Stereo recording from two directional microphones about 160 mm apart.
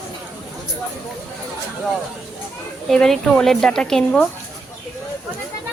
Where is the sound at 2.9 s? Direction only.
Centre (ahead or behind).